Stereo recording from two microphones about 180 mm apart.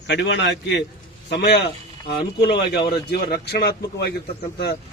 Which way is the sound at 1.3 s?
70° left (ahead or behind).